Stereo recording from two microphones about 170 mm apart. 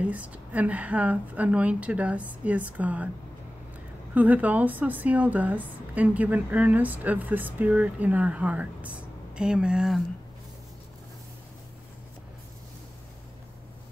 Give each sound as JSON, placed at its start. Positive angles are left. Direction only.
{"t": 0.0, "sound": "speech", "side_deg": -10}
{"t": 4.1, "sound": "speech", "side_deg": -10}